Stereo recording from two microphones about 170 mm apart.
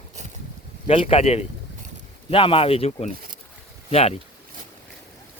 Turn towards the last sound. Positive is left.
turn(degrees=40)  # may be behind; listen again after turning